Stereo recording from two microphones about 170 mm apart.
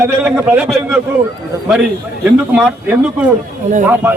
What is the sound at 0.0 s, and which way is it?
Speech, 10° right (ahead or behind).